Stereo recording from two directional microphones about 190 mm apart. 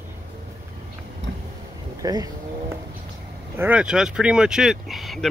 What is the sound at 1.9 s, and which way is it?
Speech, 20° right (ahead or behind).